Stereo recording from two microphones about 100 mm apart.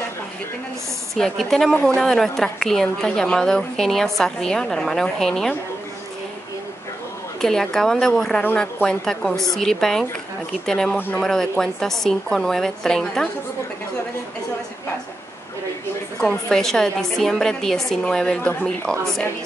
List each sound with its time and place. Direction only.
1.1 s a woman's voice: 5° left (ahead or behind)
7.4 s a woman's voice: 5° left (ahead or behind)
16.3 s a woman's voice: 5° left (ahead or behind)